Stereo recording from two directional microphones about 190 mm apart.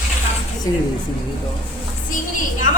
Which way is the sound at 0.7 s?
20° left (ahead or behind).